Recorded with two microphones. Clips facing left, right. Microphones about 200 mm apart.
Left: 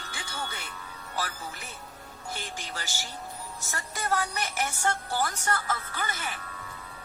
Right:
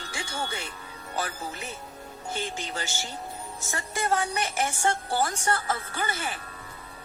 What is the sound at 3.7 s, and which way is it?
A woman's voice, 25° right (ahead or behind).